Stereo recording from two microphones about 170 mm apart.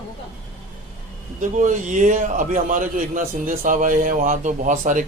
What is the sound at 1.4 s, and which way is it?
A man's voice, 50° right (ahead or behind).